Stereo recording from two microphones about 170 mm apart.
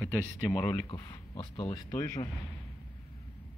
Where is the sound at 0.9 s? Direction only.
25° left (ahead or behind).